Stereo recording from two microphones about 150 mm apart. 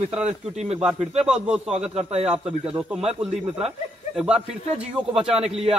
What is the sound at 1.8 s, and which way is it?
Speech, 50° right (ahead or behind).